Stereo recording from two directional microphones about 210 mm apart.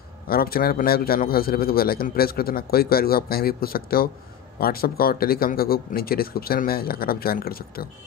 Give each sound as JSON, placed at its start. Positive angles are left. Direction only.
{"t": 0.3, "sound": "a man's voice", "side_deg": 45}